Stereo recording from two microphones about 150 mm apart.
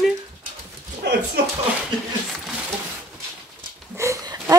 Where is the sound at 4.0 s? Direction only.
20° right (ahead or behind).